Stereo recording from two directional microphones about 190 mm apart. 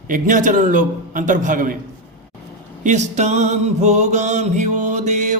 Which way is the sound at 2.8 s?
40° right (ahead or behind).